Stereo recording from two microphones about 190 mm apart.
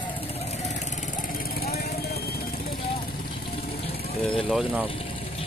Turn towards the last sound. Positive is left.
turn(degrees=0)  # may be behind; listen again after turning